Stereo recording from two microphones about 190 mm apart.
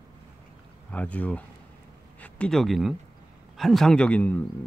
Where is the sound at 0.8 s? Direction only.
5° left (ahead or behind).